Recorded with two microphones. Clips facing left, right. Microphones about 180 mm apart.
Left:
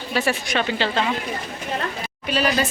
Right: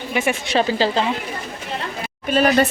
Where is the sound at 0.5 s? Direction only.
35° right (ahead or behind).